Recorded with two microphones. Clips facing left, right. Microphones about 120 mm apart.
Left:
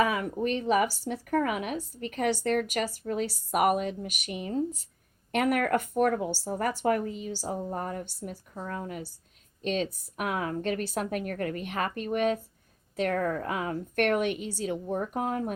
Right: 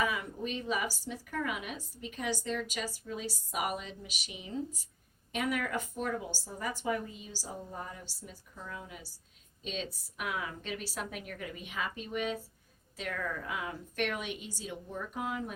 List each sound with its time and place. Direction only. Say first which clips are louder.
0.0 s speech: left 7 dB; 60° left (ahead or behind)